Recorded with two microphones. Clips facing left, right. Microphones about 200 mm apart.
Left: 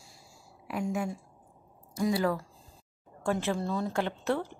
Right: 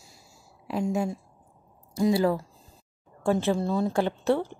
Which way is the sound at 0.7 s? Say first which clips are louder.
Right 5 dB; 25° right (ahead or behind).